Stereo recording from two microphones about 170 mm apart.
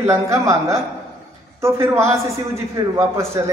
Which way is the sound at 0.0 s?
15° right (ahead or behind).